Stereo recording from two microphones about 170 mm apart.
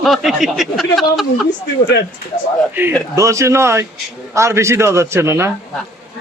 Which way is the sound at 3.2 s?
20° right (ahead or behind).